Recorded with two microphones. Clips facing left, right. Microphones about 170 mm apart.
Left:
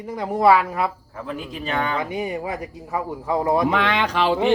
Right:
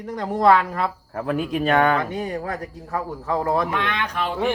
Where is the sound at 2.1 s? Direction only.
5° left (ahead or behind).